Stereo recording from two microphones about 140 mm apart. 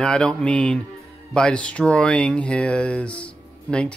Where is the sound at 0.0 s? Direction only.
5° left (ahead or behind).